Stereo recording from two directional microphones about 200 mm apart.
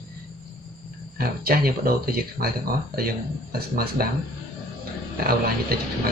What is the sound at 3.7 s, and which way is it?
Speech, 50° right (ahead or behind).